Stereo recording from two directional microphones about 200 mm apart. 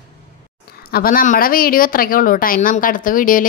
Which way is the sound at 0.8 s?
50° left (ahead or behind).